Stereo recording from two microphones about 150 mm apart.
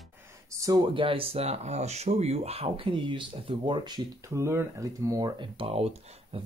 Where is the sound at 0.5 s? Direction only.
25° right (ahead or behind).